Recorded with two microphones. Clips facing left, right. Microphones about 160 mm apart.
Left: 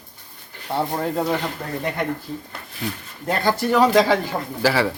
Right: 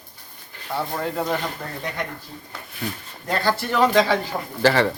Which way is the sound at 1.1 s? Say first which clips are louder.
Left 2 dB; 5° left (ahead or behind).